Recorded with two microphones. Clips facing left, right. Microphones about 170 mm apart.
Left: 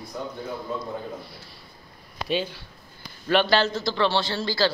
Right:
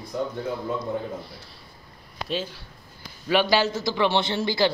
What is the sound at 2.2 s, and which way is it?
A man's voice, centre (ahead or behind).